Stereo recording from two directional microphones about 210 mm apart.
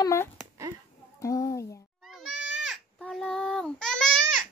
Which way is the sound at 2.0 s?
Centre (ahead or behind).